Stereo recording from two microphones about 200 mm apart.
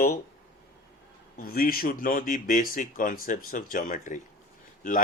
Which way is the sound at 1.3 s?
45° left (ahead or behind).